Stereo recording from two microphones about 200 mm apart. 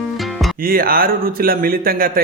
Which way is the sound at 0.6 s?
45° right (ahead or behind).